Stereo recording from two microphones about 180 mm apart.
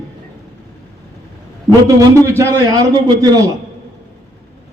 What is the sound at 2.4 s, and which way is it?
A man's voice, 20° right (ahead or behind).